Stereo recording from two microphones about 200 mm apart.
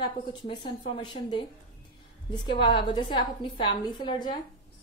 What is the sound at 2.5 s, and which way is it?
A woman's voice, 25° left (ahead or behind).